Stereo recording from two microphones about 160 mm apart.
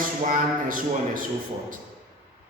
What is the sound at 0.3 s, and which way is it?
Speech, 60° right (ahead or behind).